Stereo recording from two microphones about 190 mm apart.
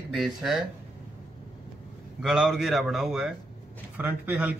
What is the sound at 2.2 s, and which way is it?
A man's voice, centre (ahead or behind).